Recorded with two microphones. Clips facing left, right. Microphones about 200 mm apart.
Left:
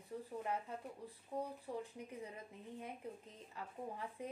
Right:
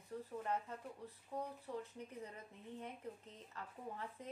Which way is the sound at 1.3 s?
10° left (ahead or behind).